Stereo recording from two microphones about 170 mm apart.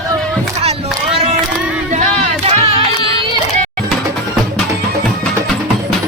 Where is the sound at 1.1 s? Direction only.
40° right (ahead or behind).